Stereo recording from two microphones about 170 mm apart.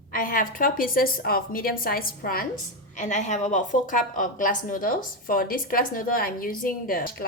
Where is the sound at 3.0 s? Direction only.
45° left (ahead or behind).